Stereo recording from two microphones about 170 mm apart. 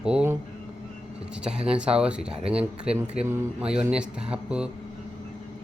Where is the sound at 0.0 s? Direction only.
5° right (ahead or behind).